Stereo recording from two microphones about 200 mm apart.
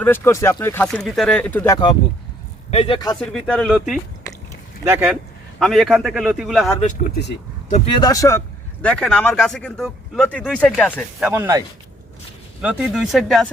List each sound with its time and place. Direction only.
0.0 s speech: 10° left (ahead or behind)
2.6 s speech: 30° left (ahead or behind)
3.2 s speech: 5° left (ahead or behind)
5.5 s speech: centre (ahead or behind)
7.1 s speech: 60° left (ahead or behind)
7.7 s speech: 25° left (ahead or behind)
8.8 s speech: 5° left (ahead or behind)
11.2 s speech: 10° right (ahead or behind)
12.6 s speech: 5° right (ahead or behind)